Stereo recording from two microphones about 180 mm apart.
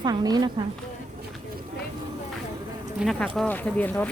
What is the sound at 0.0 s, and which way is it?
Speech, 20° right (ahead or behind).